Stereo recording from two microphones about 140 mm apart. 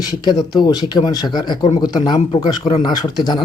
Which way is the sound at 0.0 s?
30° left (ahead or behind).